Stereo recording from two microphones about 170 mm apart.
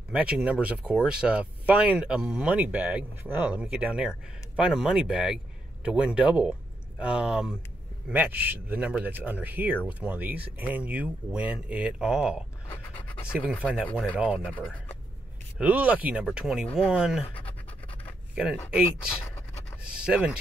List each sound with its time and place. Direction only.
0.1 s speech: 5° right (ahead or behind)
12.6 s a sound: 10° left (ahead or behind)
13.6 s speech: 10° right (ahead or behind)
13.8 s speech: 10° left (ahead or behind)
14.1 s speech: 5° right (ahead or behind)
14.4 s speech: 10° left (ahead or behind)
15.5 s speech: 10° right (ahead or behind)
17.2 s speech: 35° left (ahead or behind)
18.3 s speech: 5° right (ahead or behind)
19.8 s speech: 5° right (ahead or behind)